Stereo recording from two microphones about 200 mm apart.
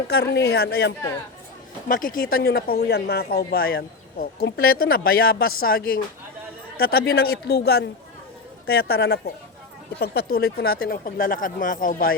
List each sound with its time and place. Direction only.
0.1 s speech: 50° left (ahead or behind)